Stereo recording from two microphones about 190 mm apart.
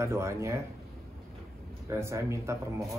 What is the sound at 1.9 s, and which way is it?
Speech, 15° right (ahead or behind).